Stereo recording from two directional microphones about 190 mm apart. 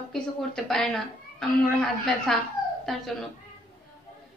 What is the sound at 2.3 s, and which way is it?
Speech, centre (ahead or behind).